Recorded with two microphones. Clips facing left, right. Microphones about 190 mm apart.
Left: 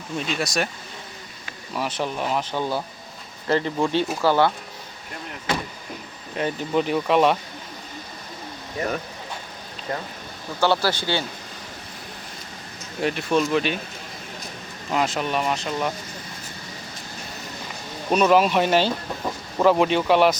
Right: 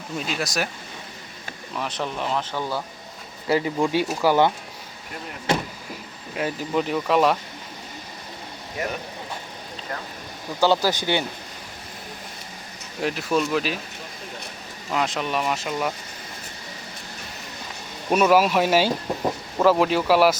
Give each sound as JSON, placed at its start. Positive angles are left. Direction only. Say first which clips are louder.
{"t": 0.2, "sound": "speech", "louder": "left 2 dB", "side_deg": 0}
{"t": 1.7, "sound": "speech", "louder": "left 2 dB", "side_deg": 5}
{"t": 3.4, "sound": "speech", "louder": "even", "side_deg": -10}
{"t": 6.3, "sound": "speech", "louder": "left 1 dB", "side_deg": -5}
{"t": 10.6, "sound": "speech", "louder": "right 1 dB", "side_deg": -15}
{"t": 13.0, "sound": "speech", "louder": "left 1 dB", "side_deg": 0}
{"t": 14.9, "sound": "speech", "louder": "left 1 dB", "side_deg": 0}
{"t": 18.1, "sound": "speech", "louder": "even", "side_deg": -5}